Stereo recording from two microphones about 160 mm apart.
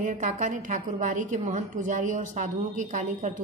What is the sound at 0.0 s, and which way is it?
A woman's voice, 50° right (ahead or behind).